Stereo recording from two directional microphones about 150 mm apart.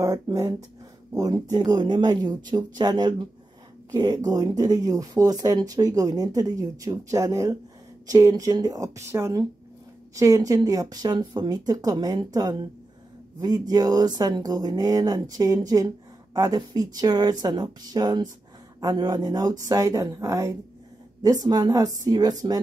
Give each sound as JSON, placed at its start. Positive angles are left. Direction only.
{"t": 0.0, "sound": "speech", "side_deg": -20}